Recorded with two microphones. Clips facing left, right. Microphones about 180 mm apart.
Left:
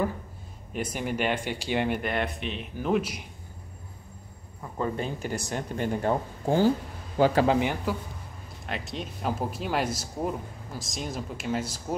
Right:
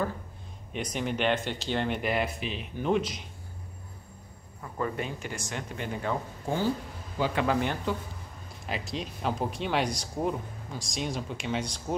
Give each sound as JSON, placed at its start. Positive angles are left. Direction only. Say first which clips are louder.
{"t": 0.9, "sound": "speech", "louder": "right 1 dB", "side_deg": 10}
{"t": 2.0, "sound": "speech", "louder": "even", "side_deg": 0}
{"t": 4.7, "sound": "speech", "louder": "left 2 dB", "side_deg": 25}
{"t": 7.5, "sound": "speech", "louder": "left 3 dB", "side_deg": 10}
{"t": 8.6, "sound": "speech", "louder": "even", "side_deg": 0}